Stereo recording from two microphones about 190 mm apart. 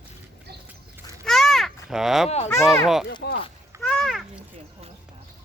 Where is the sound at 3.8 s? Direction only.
5° left (ahead or behind).